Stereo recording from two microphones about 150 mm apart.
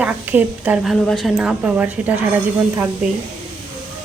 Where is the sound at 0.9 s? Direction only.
5° left (ahead or behind).